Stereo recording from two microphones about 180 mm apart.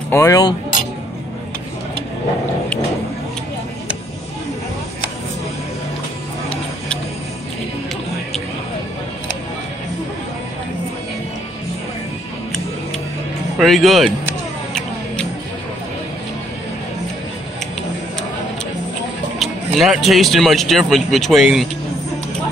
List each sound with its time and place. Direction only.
0.1 s speech: 15° left (ahead or behind)
13.6 s speech: centre (ahead or behind)
14.7 s a sound: 5° left (ahead or behind)
19.3 s a man's voice: centre (ahead or behind)